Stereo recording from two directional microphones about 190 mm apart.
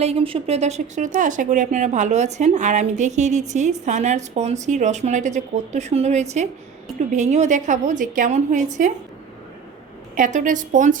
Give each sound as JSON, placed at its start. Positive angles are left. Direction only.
{"t": 0.0, "sound": "speech", "side_deg": -30}
{"t": 10.2, "sound": "a woman's voice", "side_deg": -40}